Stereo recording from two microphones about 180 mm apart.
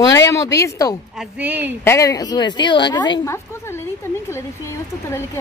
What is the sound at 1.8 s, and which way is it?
A woman's voice, 15° left (ahead or behind).